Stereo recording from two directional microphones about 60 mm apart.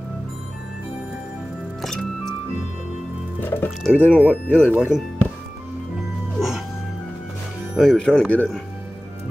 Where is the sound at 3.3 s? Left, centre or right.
Left.